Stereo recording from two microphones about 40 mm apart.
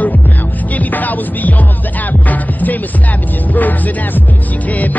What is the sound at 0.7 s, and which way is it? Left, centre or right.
Music, left.